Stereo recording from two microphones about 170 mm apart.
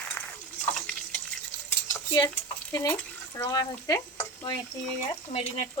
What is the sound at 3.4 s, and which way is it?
Speech, 25° left (ahead or behind).